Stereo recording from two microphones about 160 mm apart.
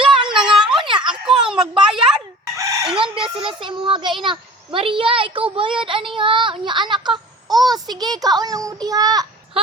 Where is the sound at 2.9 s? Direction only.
35° right (ahead or behind).